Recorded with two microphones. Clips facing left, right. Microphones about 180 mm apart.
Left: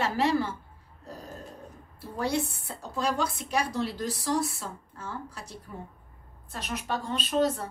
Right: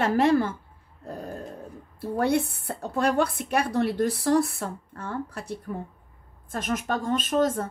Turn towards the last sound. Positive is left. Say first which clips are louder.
# right 3 dB
turn(degrees=-50)  # may be behind; listen again after turning